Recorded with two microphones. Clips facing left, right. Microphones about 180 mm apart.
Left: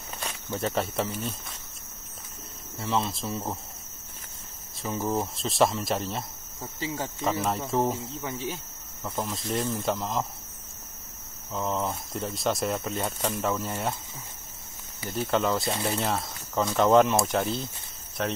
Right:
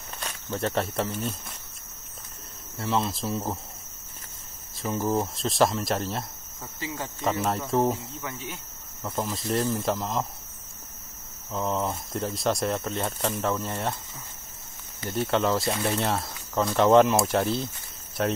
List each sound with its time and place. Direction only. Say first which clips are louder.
0.2 s speech: right 1 dB; 5° left (ahead or behind)
2.8 s speech: right 1 dB; centre (ahead or behind)
4.8 s speech: right 2 dB; centre (ahead or behind)
6.6 s speech: left 2 dB; 30° left (ahead or behind)
7.2 s speech: right 2 dB; centre (ahead or behind)
8.0 s speech: left 3 dB; 30° left (ahead or behind)
9.0 s speech: right 2 dB; centre (ahead or behind)
11.5 s speech: right 1 dB; centre (ahead or behind)
15.0 s speech: right 1 dB; centre (ahead or behind)